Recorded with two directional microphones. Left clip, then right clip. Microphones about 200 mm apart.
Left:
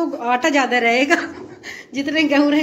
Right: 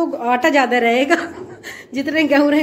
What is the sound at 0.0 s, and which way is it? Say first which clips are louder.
Speech: right 2 dB; 10° right (ahead or behind).